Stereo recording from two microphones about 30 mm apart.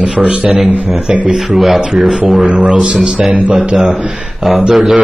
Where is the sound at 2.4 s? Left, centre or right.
Right.